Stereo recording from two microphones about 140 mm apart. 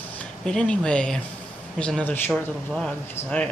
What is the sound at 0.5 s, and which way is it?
Speech, 5° left (ahead or behind).